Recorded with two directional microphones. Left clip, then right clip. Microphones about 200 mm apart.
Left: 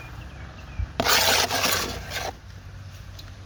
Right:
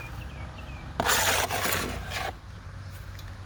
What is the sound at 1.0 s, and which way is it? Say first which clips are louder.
Rub: left 4 dB; 40° left (ahead or behind).